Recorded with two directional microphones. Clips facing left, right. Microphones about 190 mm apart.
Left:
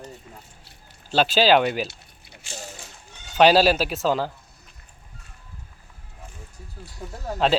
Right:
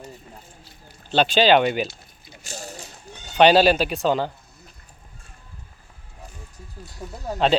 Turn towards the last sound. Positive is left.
turn(degrees=-5)  # may be behind; listen again after turning